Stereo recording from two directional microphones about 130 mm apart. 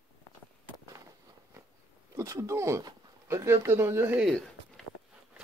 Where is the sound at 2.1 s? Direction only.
25° right (ahead or behind).